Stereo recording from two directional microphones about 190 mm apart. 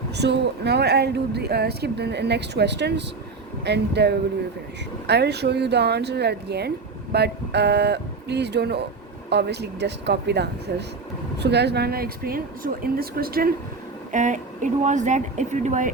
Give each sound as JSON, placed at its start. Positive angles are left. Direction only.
{"t": 0.1, "sound": "speech", "side_deg": -60}
{"t": 14.1, "sound": "speech", "side_deg": -40}